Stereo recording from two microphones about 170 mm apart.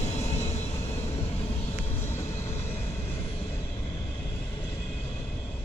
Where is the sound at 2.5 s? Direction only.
40° left (ahead or behind).